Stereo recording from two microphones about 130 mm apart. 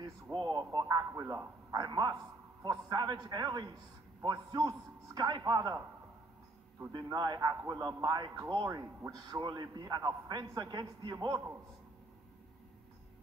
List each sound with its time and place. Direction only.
0.0 s a man's voice: 30° right (ahead or behind)
1.2 s a man's voice: 20° right (ahead or behind)
1.7 s a man's voice: 30° right (ahead or behind)
6.9 s a man's voice: 30° right (ahead or behind)